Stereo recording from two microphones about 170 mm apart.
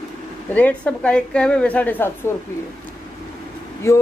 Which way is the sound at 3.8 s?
15° left (ahead or behind).